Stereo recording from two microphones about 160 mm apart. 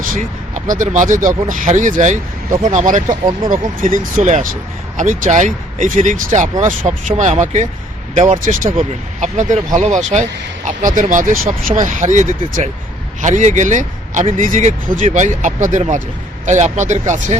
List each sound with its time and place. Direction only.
0.0 s speech: 60° right (ahead or behind)